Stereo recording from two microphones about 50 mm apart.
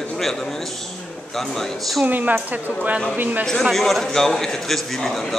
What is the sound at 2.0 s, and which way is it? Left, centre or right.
Speech, right.